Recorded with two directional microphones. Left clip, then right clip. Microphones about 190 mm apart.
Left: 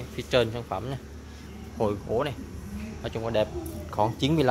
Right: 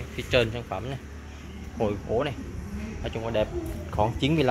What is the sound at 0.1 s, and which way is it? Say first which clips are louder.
Speech: even; 15° left (ahead or behind).